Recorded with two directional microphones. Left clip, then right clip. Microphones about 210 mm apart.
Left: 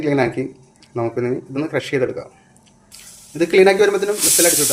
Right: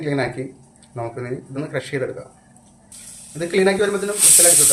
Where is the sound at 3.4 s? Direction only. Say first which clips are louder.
Left 5 dB; 45° left (ahead or behind).